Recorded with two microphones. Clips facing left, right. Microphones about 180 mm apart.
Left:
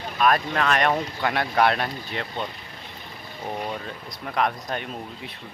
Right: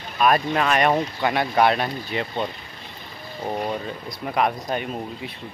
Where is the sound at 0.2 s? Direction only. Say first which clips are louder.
Right 2 dB; 5° right (ahead or behind).